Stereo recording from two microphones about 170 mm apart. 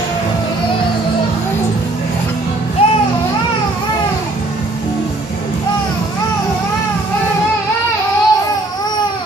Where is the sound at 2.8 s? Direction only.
35° left (ahead or behind).